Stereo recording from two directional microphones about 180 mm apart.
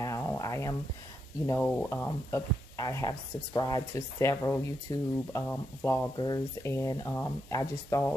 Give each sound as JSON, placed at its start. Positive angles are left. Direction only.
{"t": 0.0, "sound": "a sound", "side_deg": 15}
{"t": 1.5, "sound": "speech", "side_deg": 10}
{"t": 6.1, "sound": "speech", "side_deg": 25}